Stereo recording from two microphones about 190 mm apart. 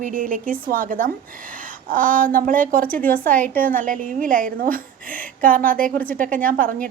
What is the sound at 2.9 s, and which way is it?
Speech, 10° left (ahead or behind).